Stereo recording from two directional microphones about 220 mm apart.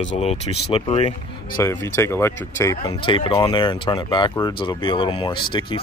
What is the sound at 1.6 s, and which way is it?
Speech, 15° left (ahead or behind).